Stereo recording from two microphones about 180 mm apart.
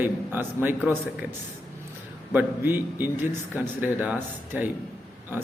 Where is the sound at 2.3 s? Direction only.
10° right (ahead or behind).